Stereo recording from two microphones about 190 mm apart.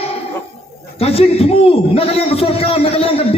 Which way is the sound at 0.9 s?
30° left (ahead or behind).